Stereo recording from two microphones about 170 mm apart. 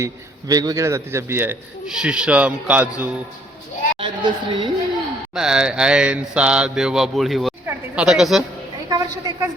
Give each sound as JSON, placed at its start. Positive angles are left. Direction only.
{"t": 0.0, "sound": "a man's voice", "side_deg": -20}
{"t": 4.0, "sound": "a woman's voice", "side_deg": -30}
{"t": 5.3, "sound": "mantra", "side_deg": -5}
{"t": 7.7, "sound": "speech", "side_deg": -5}
{"t": 8.9, "sound": "a sound", "side_deg": -20}